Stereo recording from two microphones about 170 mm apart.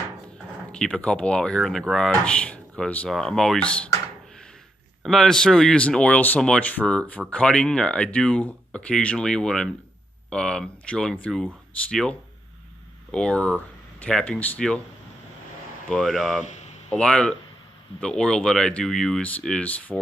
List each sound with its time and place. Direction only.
0.7 s speech: 5° left (ahead or behind)
5.0 s speech: centre (ahead or behind)
15.9 s speech: centre (ahead or behind)
16.4 s a sound: 45° left (ahead or behind)
16.9 s speech: 5° left (ahead or behind)